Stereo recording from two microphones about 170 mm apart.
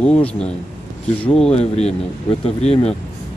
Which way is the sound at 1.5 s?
40° left (ahead or behind).